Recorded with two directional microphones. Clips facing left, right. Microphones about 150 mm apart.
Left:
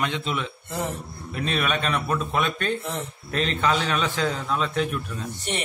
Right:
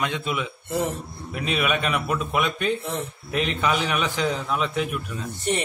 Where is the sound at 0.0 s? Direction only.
10° right (ahead or behind).